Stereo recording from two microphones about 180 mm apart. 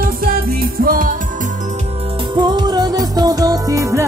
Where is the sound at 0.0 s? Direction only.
55° right (ahead or behind).